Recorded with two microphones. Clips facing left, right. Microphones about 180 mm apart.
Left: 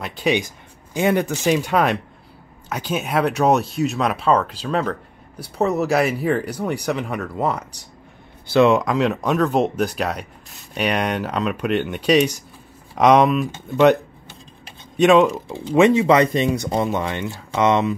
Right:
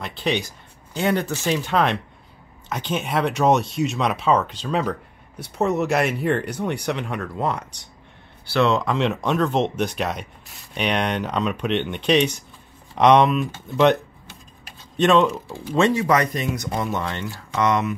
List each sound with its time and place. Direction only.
0.2 s speech: 10° left (ahead or behind)
15.0 s speech: 10° left (ahead or behind); by 16.9 s 30° left (ahead or behind)
16.9 s speech: 15° left (ahead or behind)